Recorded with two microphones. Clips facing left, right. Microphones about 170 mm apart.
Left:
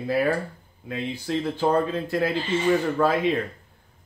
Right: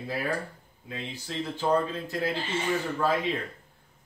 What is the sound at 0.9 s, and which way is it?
Speech, 60° left (ahead or behind).